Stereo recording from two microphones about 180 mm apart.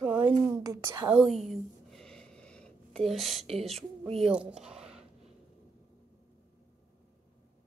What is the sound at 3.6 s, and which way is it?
Speech, centre (ahead or behind).